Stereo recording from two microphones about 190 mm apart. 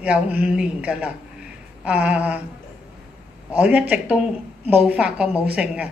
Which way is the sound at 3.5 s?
5° right (ahead or behind).